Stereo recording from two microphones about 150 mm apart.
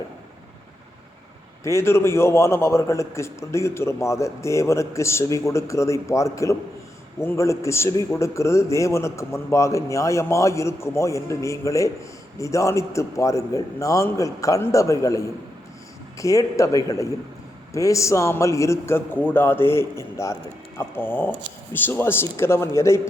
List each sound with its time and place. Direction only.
1.6 s a man's voice: 20° left (ahead or behind)